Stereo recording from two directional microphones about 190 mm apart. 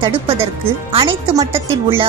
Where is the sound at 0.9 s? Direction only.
30° right (ahead or behind).